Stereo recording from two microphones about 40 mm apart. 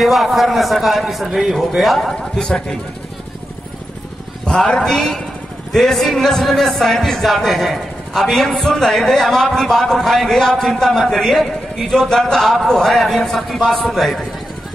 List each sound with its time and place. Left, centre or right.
0.0 s a man's voice: centre
2.1 s a man's voice: centre
4.5 s a man's voice: centre